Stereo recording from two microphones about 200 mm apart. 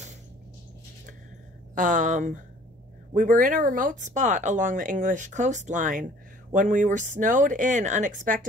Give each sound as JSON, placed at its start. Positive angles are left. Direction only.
{"t": 1.8, "sound": "speech", "side_deg": -40}